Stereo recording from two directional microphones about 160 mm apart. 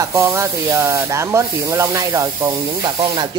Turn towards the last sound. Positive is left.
turn(degrees=-25)  # may be behind; listen again after turning